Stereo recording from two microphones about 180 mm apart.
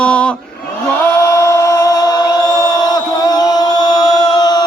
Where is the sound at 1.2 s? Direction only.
15° left (ahead or behind).